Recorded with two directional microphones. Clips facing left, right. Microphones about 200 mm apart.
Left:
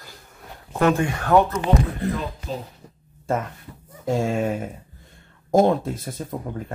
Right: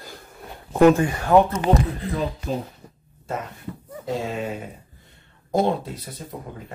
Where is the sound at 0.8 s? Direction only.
10° right (ahead or behind).